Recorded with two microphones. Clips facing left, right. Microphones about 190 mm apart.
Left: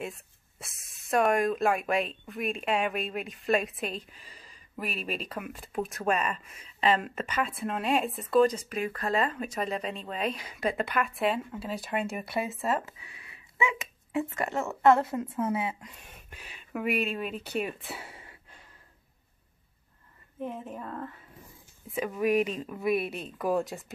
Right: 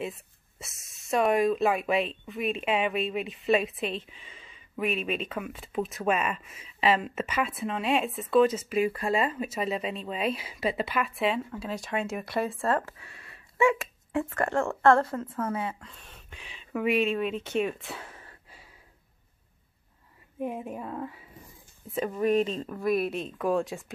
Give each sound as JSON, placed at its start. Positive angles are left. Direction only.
{"t": 0.0, "sound": "speech", "side_deg": 0}
{"t": 12.5, "sound": "speech", "side_deg": 20}
{"t": 20.3, "sound": "speech", "side_deg": -10}
{"t": 21.9, "sound": "speech", "side_deg": 5}